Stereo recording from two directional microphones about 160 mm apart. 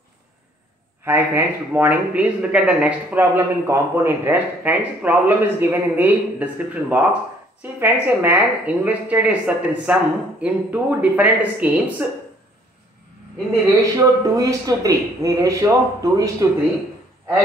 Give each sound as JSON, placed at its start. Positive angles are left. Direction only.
{"t": 1.0, "sound": "speech", "side_deg": -15}
{"t": 13.7, "sound": "a man's voice", "side_deg": -20}